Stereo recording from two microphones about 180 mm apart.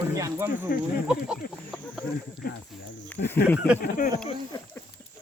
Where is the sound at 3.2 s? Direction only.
90° left.